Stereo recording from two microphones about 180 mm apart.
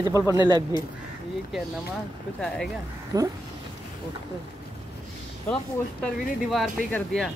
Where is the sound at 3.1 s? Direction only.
20° right (ahead or behind).